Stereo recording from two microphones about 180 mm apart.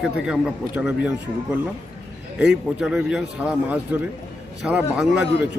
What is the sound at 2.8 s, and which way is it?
Speech, centre (ahead or behind).